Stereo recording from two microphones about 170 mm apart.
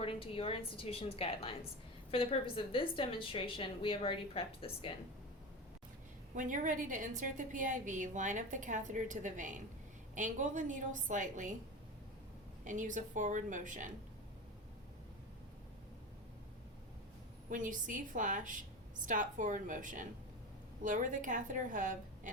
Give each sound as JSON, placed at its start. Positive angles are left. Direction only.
{"t": 0.0, "sound": "a woman's voice", "side_deg": 35}
{"t": 6.3, "sound": "a woman's voice", "side_deg": -50}
{"t": 12.6, "sound": "a woman's voice", "side_deg": -50}
{"t": 17.5, "sound": "a woman's voice", "side_deg": -50}